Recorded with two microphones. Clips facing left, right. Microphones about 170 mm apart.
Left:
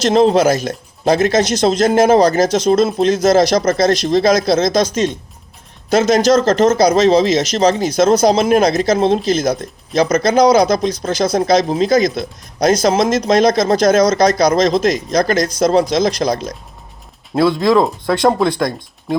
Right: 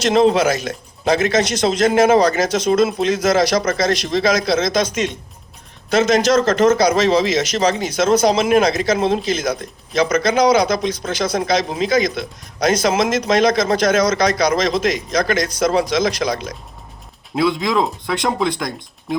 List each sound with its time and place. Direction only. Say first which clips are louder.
0.1 s a man's voice: left 2 dB; 35° left (ahead or behind)